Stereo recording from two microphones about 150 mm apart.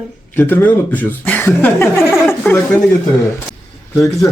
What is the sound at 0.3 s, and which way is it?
Speech, 15° left (ahead or behind).